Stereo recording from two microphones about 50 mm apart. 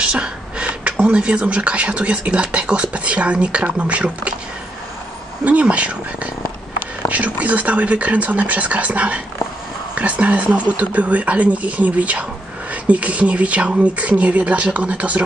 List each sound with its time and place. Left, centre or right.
0.0 s a sound: right
1.1 s speech: right
5.4 s speech: right